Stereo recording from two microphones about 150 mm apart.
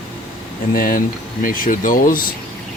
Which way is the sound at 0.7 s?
70° left (ahead or behind).